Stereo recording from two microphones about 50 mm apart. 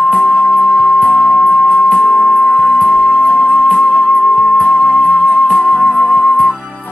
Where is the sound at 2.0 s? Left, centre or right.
Right.